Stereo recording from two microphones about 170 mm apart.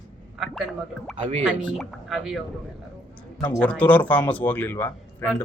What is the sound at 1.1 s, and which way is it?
Speech, 40° right (ahead or behind).